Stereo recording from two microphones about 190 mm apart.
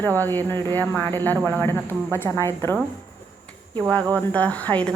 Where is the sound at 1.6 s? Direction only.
10° left (ahead or behind).